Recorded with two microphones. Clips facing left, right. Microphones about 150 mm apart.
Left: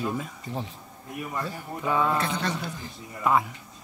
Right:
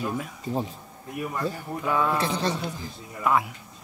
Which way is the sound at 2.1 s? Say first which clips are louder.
Right 2 dB; 25° right (ahead or behind).